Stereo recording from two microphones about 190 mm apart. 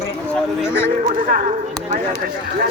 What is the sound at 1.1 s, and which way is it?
Speech, 40° right (ahead or behind).